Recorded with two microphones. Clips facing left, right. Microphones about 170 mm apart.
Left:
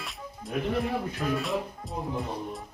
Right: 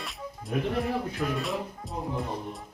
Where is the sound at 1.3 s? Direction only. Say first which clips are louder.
Left 1 dB; centre (ahead or behind).